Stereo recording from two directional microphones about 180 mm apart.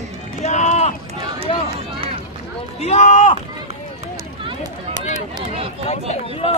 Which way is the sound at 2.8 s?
40° left (ahead or behind).